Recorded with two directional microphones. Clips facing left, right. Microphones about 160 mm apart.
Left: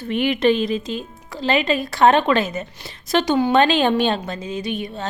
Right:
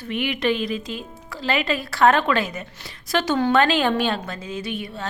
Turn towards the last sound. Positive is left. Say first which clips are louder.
# left 3 dB
turn(degrees=20)  # may be behind; listen again after turning